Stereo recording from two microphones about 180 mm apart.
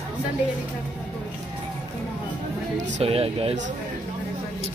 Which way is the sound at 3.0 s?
35° right (ahead or behind).